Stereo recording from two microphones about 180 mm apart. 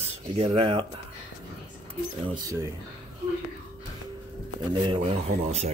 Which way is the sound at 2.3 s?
20° right (ahead or behind).